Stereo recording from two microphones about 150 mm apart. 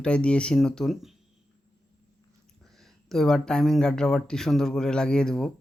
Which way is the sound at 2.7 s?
Centre (ahead or behind).